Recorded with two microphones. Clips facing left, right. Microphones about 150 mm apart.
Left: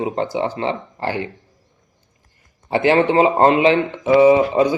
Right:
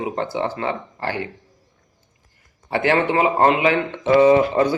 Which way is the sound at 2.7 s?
20° left (ahead or behind).